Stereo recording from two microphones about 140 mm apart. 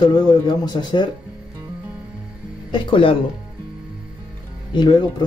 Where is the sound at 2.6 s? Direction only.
40° left (ahead or behind).